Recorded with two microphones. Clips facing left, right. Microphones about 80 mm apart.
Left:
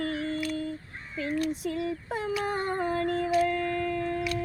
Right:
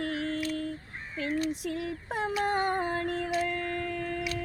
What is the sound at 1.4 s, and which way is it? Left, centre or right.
Female singing, left.